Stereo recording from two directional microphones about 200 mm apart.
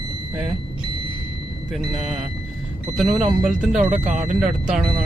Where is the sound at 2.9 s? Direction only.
Centre (ahead or behind).